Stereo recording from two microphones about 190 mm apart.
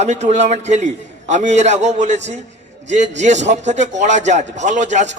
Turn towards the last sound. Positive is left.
turn(degrees=-40)  # may be behind; listen again after turning